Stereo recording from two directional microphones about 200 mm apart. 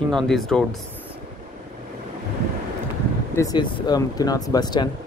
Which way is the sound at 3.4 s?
20° left (ahead or behind).